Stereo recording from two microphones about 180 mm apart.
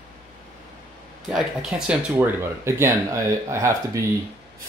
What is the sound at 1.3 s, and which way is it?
Speech, 5° right (ahead or behind).